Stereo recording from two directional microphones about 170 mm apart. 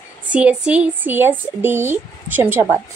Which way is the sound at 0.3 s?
5° right (ahead or behind).